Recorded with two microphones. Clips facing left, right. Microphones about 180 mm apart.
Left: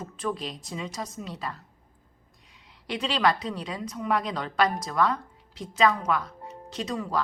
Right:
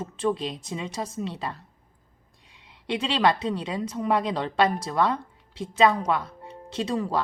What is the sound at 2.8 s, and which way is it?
A woman's voice, 25° right (ahead or behind).